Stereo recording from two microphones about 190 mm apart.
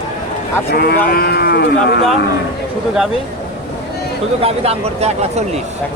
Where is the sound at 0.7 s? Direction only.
55° left (ahead or behind).